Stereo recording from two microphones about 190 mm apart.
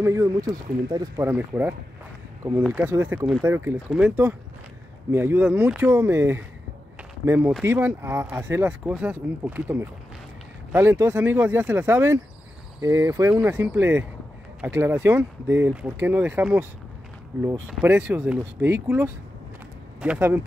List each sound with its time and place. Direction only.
0.0 s speech: 15° right (ahead or behind)
17.6 s speech: 5° right (ahead or behind)
20.0 s speech: 10° right (ahead or behind)